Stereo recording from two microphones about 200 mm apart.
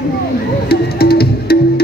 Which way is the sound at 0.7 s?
50° left (ahead or behind).